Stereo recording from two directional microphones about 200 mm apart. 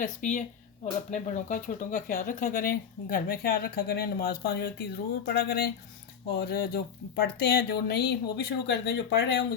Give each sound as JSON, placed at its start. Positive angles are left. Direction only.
{"t": 0.0, "sound": "speech", "side_deg": 40}